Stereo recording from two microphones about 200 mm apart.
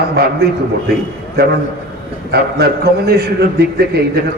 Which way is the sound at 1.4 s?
50° right (ahead or behind).